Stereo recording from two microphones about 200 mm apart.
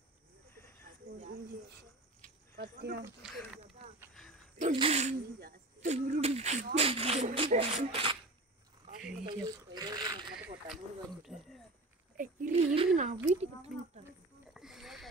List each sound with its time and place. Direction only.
2.5 s speech: 50° right (ahead or behind)
3.2 s speech: 5° right (ahead or behind)
4.7 s speech: 30° right (ahead or behind)
9.2 s a sound: 20° right (ahead or behind)
11.2 s speech: centre (ahead or behind)
12.2 s speech: 40° right (ahead or behind)
14.5 s a sound: centre (ahead or behind)